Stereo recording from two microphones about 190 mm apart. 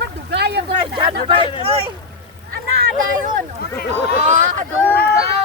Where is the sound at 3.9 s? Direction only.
40° right (ahead or behind).